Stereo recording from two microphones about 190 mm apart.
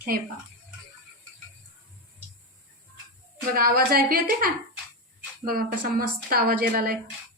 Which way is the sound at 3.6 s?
50° right (ahead or behind).